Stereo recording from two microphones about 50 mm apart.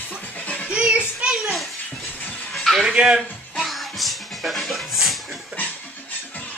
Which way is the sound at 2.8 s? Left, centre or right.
Centre.